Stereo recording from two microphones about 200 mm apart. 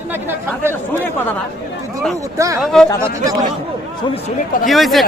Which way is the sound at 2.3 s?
15° right (ahead or behind).